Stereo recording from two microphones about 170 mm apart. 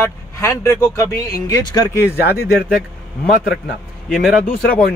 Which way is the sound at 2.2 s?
70° left (ahead or behind).